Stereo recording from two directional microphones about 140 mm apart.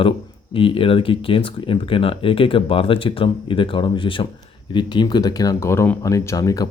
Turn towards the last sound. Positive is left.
turn(degrees=25)  # may be behind; listen again after turning